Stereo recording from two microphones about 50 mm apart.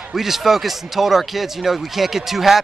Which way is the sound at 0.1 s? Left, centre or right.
Centre.